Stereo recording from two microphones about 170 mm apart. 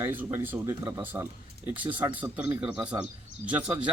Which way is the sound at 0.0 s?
10° right (ahead or behind).